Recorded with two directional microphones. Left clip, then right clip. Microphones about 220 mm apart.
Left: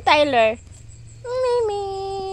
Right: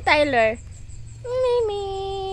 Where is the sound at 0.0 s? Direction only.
10° left (ahead or behind).